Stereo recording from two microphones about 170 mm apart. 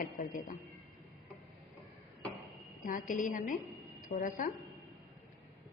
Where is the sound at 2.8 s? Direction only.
50° left (ahead or behind).